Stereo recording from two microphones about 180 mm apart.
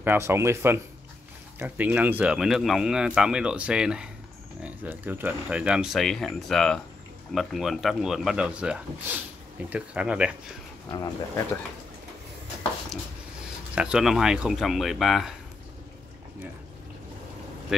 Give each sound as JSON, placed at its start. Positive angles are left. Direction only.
{"t": 0.0, "sound": "speech", "side_deg": -10}
{"t": 10.9, "sound": "speech", "side_deg": 20}
{"t": 13.7, "sound": "speech", "side_deg": -5}